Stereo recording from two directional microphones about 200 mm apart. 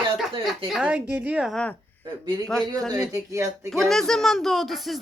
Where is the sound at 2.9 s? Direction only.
15° right (ahead or behind).